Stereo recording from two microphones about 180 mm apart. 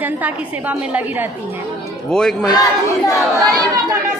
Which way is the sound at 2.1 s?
5° left (ahead or behind).